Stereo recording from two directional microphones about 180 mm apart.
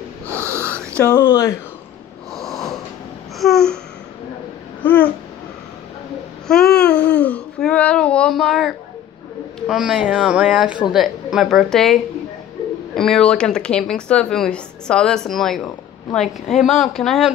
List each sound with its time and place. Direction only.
0.3 s wheeze: 15° right (ahead or behind)
0.6 s wheeze: 10° left (ahead or behind)
1.1 s speech: 15° left (ahead or behind)
2.3 s snort: centre (ahead or behind)
3.3 s a sound: centre (ahead or behind)
4.8 s speech: 10° left (ahead or behind)
6.4 s babbling: 5° left (ahead or behind)
7.1 s a sound: 5° left (ahead or behind)
9.6 s speech: 5° right (ahead or behind)